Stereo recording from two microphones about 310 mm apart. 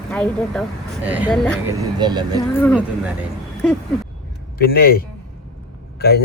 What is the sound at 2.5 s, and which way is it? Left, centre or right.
Speech, centre.